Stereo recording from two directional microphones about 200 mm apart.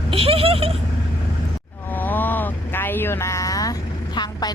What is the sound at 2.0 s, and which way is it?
Vehicle, 10° left (ahead or behind).